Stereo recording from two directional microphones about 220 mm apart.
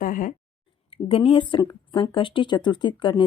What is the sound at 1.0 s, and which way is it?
Speech, 25° left (ahead or behind).